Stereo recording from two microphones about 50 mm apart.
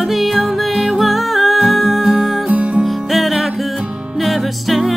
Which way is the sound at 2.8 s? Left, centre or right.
Centre.